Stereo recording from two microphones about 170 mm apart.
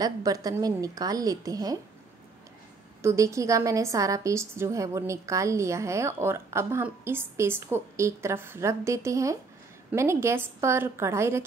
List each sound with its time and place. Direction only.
0.0 s a woman's voice: 20° right (ahead or behind)
3.0 s a woman's voice: 15° right (ahead or behind)